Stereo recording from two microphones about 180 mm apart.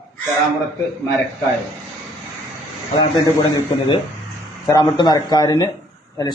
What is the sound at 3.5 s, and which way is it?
A man's voice, 25° left (ahead or behind).